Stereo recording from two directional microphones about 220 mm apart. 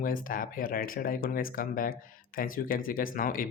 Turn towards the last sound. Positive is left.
turn(degrees=40)  # may be behind; listen again after turning